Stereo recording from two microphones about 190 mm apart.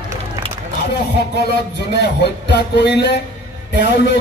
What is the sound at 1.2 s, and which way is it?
Speech, 60° left (ahead or behind).